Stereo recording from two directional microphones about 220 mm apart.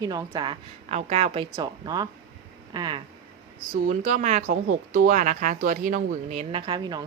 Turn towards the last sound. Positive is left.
turn(degrees=-20)  # may be behind; listen again after turning